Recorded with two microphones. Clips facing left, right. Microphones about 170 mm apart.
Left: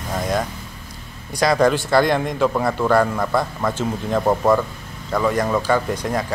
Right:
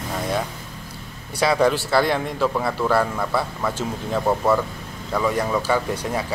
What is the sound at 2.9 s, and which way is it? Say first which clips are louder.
Speech: left 4 dB; 5° right (ahead or behind).